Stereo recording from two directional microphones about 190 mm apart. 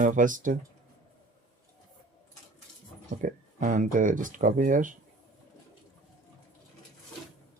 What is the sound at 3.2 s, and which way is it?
Speech, 40° right (ahead or behind).